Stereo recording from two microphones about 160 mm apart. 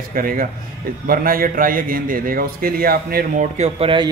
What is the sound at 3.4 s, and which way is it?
Speech, 45° right (ahead or behind).